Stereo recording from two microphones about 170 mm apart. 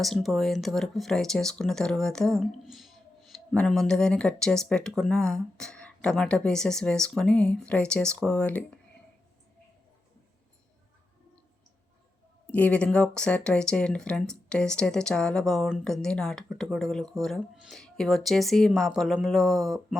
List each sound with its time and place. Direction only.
0.0 s speech: centre (ahead or behind)
12.5 s speech: 10° left (ahead or behind)